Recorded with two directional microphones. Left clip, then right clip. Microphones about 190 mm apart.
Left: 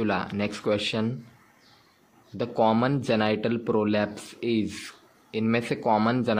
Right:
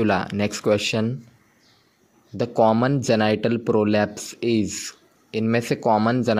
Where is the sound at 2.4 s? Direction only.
35° right (ahead or behind).